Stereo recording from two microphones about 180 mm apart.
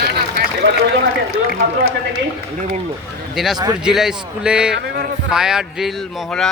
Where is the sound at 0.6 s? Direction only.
90° right.